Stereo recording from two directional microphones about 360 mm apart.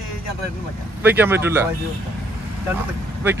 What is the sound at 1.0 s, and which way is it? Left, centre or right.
Speech, centre.